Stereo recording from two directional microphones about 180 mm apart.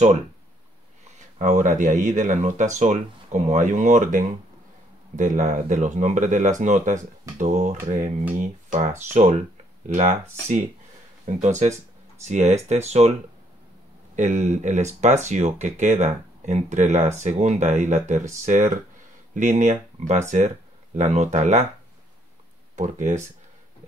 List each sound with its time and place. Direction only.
1.4 s speech: 45° right (ahead or behind)
11.2 s speech: 40° right (ahead or behind)
14.1 s speech: 40° right (ahead or behind)
22.8 s speech: 40° right (ahead or behind)